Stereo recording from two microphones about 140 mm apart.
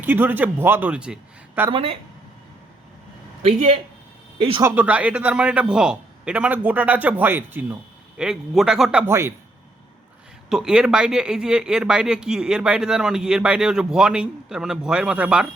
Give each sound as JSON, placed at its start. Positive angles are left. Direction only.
{"t": 0.0, "sound": "a man's voice", "side_deg": -15}
{"t": 1.7, "sound": "speech", "side_deg": -40}
{"t": 3.4, "sound": "speech", "side_deg": -45}
{"t": 4.6, "sound": "a man's voice", "side_deg": -15}
{"t": 9.0, "sound": "a man's voice", "side_deg": -20}
{"t": 10.5, "sound": "speech", "side_deg": -5}